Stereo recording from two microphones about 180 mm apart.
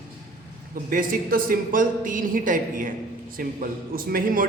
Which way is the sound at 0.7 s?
50° right (ahead or behind).